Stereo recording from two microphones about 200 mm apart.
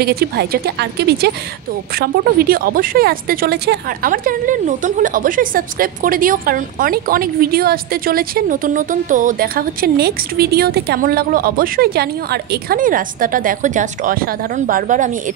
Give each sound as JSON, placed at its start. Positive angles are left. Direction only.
{"t": 0.0, "sound": "speech", "side_deg": -50}